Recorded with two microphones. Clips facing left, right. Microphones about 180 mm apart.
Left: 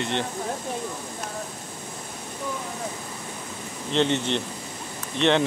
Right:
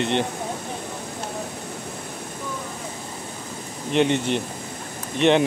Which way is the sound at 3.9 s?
15° right (ahead or behind).